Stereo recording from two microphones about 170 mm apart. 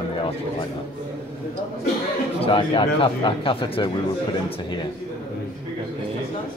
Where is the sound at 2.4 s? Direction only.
30° left (ahead or behind).